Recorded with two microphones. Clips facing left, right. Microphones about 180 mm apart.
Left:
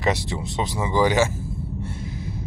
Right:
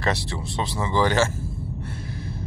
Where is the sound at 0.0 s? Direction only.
15° left (ahead or behind).